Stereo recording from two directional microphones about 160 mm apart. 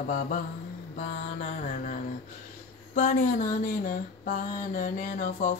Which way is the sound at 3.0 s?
55° left (ahead or behind).